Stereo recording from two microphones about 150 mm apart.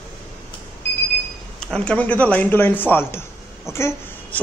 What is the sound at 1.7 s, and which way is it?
Speech, 5° left (ahead or behind).